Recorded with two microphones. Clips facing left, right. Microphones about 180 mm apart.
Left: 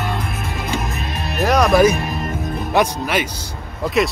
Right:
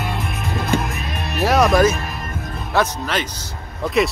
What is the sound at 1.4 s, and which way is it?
Speech, 5° right (ahead or behind).